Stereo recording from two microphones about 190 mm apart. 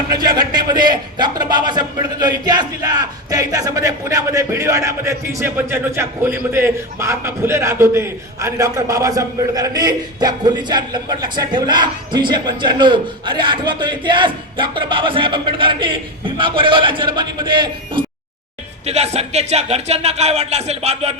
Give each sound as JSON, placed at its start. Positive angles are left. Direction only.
{"t": 0.1, "sound": "a man's voice", "side_deg": -20}